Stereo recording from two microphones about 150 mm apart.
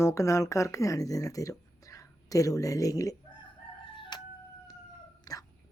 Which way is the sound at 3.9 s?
35° left (ahead or behind).